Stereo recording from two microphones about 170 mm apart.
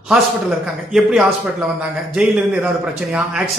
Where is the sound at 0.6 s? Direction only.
5° right (ahead or behind).